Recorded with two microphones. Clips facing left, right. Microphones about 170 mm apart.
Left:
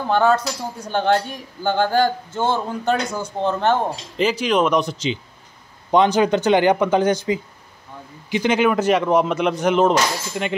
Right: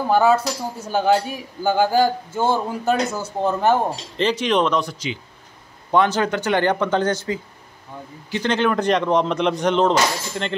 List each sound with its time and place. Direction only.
0.1 s a man's voice: 5° right (ahead or behind)
4.2 s speech: 5° left (ahead or behind)
4.6 s speech: 20° left (ahead or behind)